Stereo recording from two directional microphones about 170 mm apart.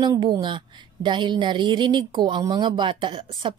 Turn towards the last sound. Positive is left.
turn(degrees=-30)  # may be behind; listen again after turning